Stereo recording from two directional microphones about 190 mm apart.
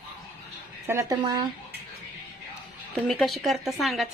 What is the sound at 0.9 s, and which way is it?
Speech, 15° right (ahead or behind).